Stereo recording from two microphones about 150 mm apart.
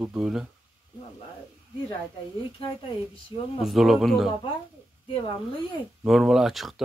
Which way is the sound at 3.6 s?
Centre (ahead or behind).